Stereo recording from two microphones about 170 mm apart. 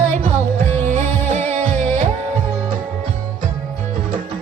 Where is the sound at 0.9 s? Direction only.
40° right (ahead or behind).